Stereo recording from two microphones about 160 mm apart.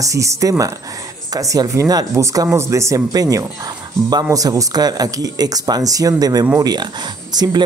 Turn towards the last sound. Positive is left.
turn(degrees=-25)  # may be behind; listen again after turning